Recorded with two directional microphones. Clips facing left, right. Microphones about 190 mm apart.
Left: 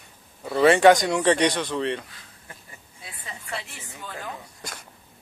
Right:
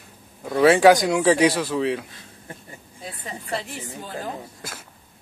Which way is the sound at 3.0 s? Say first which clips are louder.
Right 7 dB; 35° right (ahead or behind).